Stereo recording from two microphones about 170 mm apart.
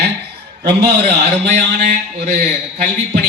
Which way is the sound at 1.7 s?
50° right (ahead or behind).